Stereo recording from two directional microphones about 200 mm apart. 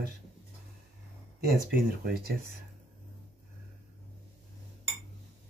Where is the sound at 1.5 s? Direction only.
50° right (ahead or behind).